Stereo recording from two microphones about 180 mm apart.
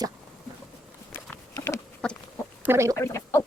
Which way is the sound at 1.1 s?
10° left (ahead or behind).